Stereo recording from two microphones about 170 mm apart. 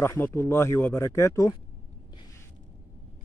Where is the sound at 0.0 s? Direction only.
15° left (ahead or behind).